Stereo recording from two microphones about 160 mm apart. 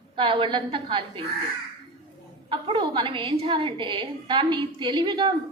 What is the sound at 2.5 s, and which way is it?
A woman's voice, 30° right (ahead or behind).